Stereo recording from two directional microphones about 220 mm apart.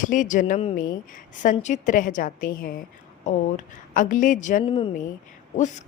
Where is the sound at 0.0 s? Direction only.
35° left (ahead or behind).